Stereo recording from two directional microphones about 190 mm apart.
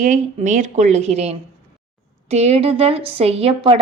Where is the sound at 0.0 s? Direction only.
40° right (ahead or behind).